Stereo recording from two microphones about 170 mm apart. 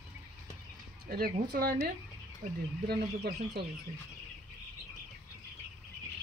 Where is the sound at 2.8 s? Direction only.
70° right (ahead or behind).